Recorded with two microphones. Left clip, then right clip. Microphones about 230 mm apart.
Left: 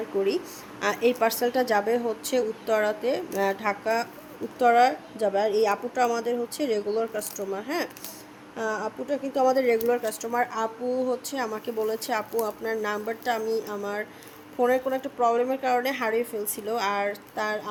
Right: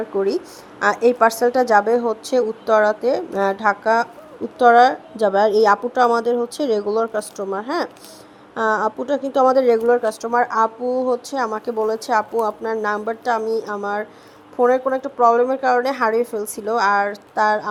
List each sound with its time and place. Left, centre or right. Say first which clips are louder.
0.3 s a woman's voice: right 5 dB; right
13.4 s speech: right 6 dB; centre
14.6 s a woman's voice: right 7 dB; centre